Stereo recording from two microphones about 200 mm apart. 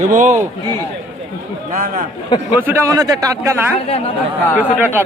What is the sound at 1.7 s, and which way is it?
Speech, 40° right (ahead or behind).